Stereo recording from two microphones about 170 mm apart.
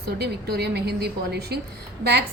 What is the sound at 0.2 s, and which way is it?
A woman's voice, 75° right (ahead or behind).